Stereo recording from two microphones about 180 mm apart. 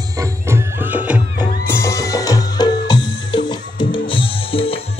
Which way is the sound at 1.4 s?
15° left (ahead or behind).